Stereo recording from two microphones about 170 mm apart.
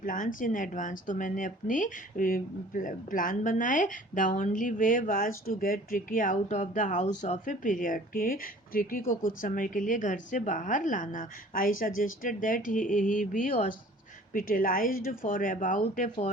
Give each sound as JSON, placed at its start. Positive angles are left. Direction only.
{"t": 0.0, "sound": "speech", "side_deg": 50}